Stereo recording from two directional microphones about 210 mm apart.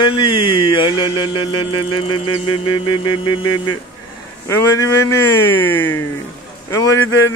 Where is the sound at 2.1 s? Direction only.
90° left.